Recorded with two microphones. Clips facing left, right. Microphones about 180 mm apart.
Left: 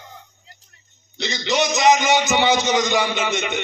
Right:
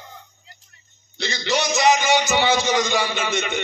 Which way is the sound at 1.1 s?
20° left (ahead or behind).